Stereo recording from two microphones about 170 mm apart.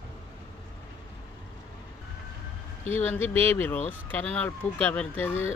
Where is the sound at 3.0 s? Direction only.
10° left (ahead or behind).